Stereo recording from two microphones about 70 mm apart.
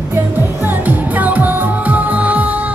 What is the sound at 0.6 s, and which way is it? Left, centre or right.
Music, right.